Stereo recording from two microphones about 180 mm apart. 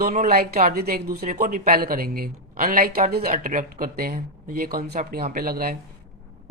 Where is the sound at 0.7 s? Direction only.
60° right (ahead or behind).